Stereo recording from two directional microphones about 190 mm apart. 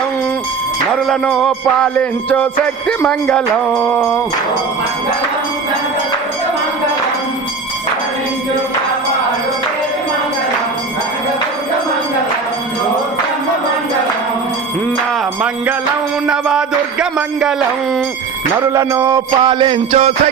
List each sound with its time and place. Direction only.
1.0 s music: centre (ahead or behind)
16.2 s music: 5° right (ahead or behind)
18.7 s music: 15° right (ahead or behind)